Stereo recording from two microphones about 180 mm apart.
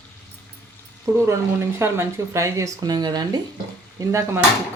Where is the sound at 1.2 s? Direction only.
15° right (ahead or behind).